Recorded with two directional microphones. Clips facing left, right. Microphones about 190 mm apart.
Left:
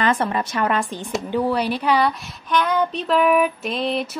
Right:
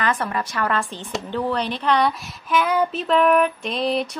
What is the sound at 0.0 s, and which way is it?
A woman's voice, 25° left (ahead or behind).